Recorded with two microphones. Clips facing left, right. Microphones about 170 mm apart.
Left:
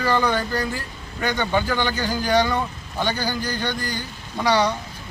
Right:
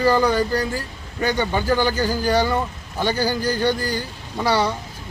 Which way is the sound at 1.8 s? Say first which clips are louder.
Right 4 dB; 35° right (ahead or behind).